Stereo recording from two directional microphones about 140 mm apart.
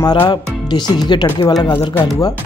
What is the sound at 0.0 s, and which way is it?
Speech, 30° left (ahead or behind).